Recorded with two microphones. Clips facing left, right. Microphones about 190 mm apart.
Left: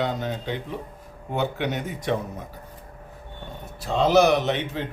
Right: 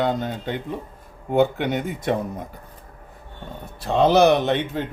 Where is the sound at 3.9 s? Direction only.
60° right (ahead or behind).